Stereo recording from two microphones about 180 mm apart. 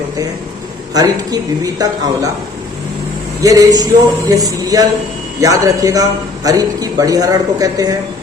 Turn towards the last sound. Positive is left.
turn(degrees=-20)  # may be behind; listen again after turning